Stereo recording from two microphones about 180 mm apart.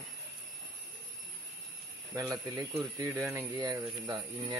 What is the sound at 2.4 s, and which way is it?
Speech, 15° right (ahead or behind).